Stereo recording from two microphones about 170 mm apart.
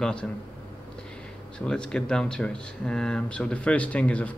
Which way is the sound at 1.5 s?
5° left (ahead or behind).